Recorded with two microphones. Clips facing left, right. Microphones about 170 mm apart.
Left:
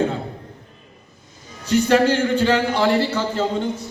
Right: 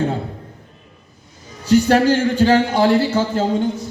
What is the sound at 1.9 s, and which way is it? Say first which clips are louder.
A man's voice: right 2 dB; 40° right (ahead or behind).